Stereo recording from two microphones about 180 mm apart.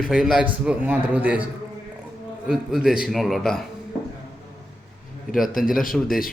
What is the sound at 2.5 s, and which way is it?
Speech, 5° right (ahead or behind).